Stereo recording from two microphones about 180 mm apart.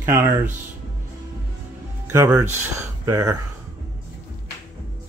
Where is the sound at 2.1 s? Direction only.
15° right (ahead or behind).